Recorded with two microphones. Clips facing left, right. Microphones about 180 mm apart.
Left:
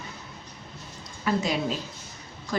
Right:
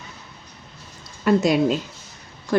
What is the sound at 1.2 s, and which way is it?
Speech, 65° right (ahead or behind).